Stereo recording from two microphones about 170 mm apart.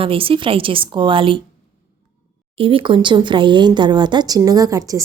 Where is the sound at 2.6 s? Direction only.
30° right (ahead or behind).